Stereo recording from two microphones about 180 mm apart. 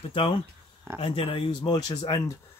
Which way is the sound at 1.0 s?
30° left (ahead or behind).